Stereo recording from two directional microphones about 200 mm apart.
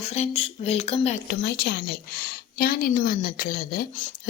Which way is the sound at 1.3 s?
55° left (ahead or behind).